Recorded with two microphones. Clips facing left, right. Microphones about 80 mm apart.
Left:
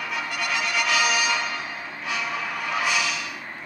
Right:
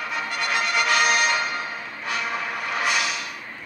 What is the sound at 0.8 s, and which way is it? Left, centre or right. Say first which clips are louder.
Music: right 2 dB; right.